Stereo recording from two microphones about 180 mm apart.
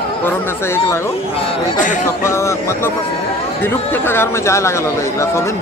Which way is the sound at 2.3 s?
15° left (ahead or behind).